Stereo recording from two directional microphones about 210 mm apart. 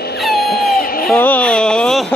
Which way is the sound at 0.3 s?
45° left (ahead or behind).